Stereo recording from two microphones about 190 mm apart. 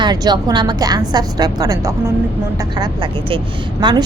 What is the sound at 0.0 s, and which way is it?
Speech, 20° right (ahead or behind).